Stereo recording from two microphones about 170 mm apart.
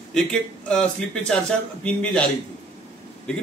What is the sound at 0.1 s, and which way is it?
Speech, 5° left (ahead or behind).